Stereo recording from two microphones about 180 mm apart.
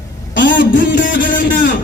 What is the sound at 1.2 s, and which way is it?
Speech, 50° left (ahead or behind).